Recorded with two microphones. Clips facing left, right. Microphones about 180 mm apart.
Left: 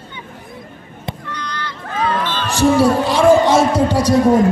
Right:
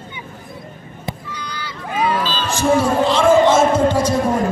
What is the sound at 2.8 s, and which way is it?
Speech, 35° left (ahead or behind).